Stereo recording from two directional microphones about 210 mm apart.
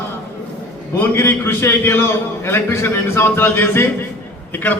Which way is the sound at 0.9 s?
10° left (ahead or behind).